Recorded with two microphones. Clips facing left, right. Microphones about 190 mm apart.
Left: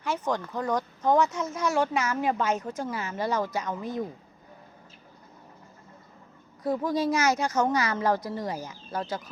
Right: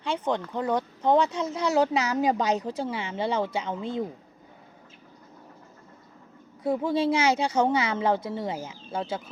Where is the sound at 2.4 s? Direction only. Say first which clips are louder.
Right 2 dB; 35° right (ahead or behind).